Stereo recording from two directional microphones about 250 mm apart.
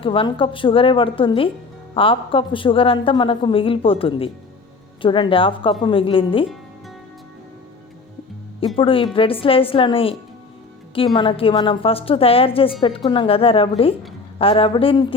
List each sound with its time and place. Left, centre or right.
0.0 s a woman's voice: left
8.6 s a woman's voice: left